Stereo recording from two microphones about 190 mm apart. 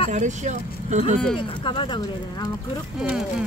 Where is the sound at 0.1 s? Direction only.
40° right (ahead or behind).